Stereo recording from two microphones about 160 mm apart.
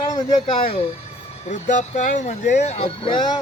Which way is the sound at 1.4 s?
50° left (ahead or behind).